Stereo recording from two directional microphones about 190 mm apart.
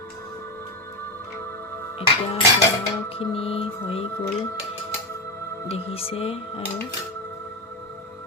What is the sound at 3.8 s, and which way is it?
Speech, 30° left (ahead or behind).